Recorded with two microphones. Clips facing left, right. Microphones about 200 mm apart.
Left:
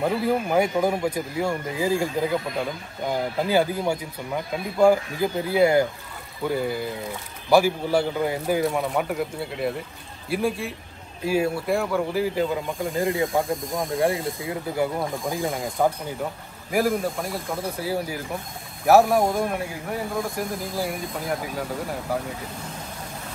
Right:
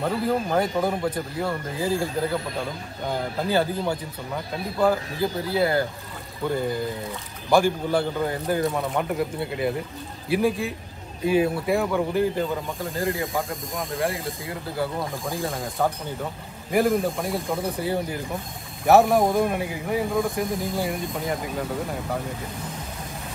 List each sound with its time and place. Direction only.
0.0 s speech: 10° left (ahead or behind)
3.4 s speech: 10° left (ahead or behind)
7.4 s speech: 5° left (ahead or behind)
12.9 s speech: 20° left (ahead or behind)
16.7 s speech: centre (ahead or behind)